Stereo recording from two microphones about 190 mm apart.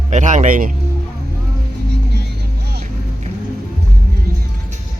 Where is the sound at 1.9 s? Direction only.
60° right (ahead or behind).